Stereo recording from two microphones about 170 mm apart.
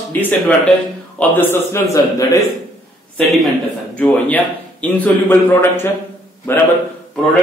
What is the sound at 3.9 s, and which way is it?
A man's voice, 10° left (ahead or behind).